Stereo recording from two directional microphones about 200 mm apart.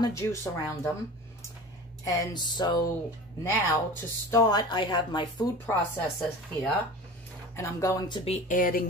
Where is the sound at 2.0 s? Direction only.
20° left (ahead or behind).